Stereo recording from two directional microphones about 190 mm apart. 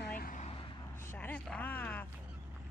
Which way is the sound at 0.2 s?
45° left (ahead or behind).